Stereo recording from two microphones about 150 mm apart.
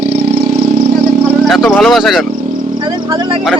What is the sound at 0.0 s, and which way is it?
Vehicle, 90° right.